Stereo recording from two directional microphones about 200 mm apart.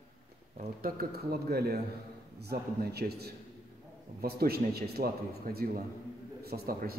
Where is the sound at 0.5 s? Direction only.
45° right (ahead or behind).